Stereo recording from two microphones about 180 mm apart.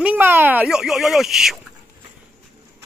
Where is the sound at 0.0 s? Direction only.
10° right (ahead or behind).